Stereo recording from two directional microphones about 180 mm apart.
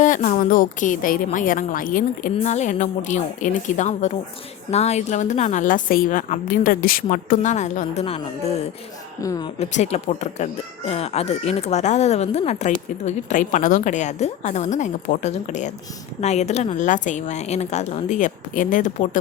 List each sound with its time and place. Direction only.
0.0 s a woman's voice: 45° left (ahead or behind)
9.2 s speech: 20° left (ahead or behind)
9.6 s speech: 35° left (ahead or behind)